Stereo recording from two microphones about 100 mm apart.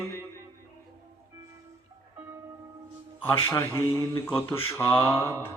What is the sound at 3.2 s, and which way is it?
A man's voice, 25° left (ahead or behind).